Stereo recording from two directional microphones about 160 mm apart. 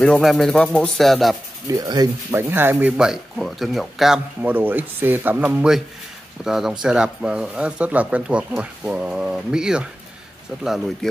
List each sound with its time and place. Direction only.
0.0 s speech: 5° left (ahead or behind)
1.7 s speech: 25° right (ahead or behind)
2.5 s speech: 15° right (ahead or behind)
4.4 s speech: 10° right (ahead or behind)